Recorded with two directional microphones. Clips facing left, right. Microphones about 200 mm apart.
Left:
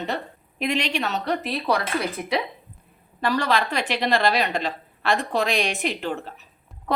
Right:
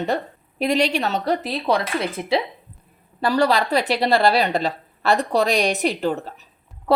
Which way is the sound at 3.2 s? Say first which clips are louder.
Right 4 dB; 35° right (ahead or behind).